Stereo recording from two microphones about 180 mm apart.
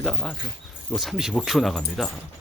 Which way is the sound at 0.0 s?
Centre (ahead or behind).